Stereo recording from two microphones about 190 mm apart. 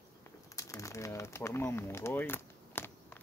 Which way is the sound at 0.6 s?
15° left (ahead or behind).